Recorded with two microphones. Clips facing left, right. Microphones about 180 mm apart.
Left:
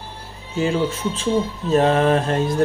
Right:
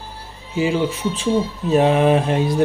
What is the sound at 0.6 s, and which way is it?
Speech, 15° right (ahead or behind).